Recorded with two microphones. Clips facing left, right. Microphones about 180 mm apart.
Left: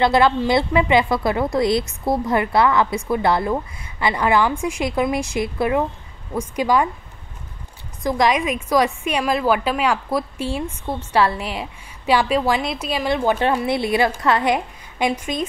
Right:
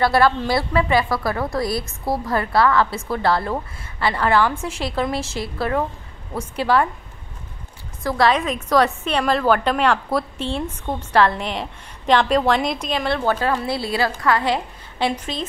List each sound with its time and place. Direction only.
0.0 s a woman's voice: 20° left (ahead or behind)
8.0 s a woman's voice: 15° left (ahead or behind)